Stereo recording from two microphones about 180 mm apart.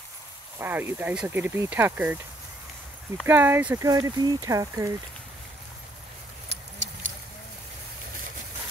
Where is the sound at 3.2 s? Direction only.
10° right (ahead or behind).